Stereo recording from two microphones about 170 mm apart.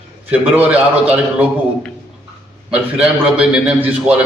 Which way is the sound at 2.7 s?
5° right (ahead or behind).